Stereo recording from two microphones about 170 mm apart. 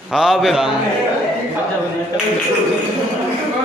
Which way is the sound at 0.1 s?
5° right (ahead or behind).